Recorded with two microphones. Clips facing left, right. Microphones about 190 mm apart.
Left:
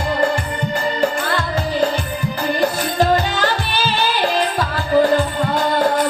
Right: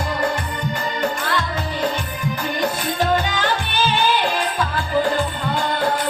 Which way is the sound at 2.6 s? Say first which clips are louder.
Left 4 dB; 35° left (ahead or behind).